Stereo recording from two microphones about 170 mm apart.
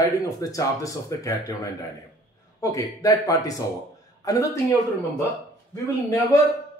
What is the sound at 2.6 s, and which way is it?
Speech, 20° left (ahead or behind).